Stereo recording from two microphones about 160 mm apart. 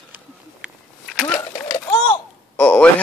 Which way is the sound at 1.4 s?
20° left (ahead or behind).